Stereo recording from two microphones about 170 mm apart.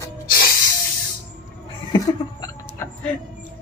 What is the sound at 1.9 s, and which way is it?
Hiccup, 25° left (ahead or behind).